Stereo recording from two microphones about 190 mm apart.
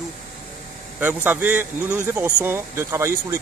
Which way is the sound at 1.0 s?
10° right (ahead or behind).